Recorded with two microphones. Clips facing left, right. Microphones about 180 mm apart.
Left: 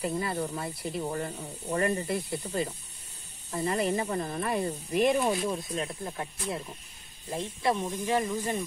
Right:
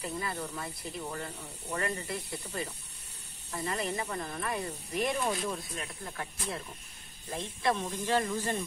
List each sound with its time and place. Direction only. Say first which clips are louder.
0.0 s speech: left 6 dB; 35° left (ahead or behind); by 5.6 s 10° left (ahead or behind)
5.8 s speech: left 6 dB; 25° left (ahead or behind)